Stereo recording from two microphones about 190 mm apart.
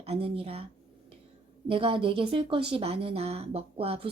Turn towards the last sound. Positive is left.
turn(degrees=-30)  # may be behind; listen again after turning